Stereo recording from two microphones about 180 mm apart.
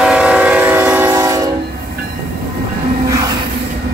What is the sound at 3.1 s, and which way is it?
Train, 20° right (ahead or behind).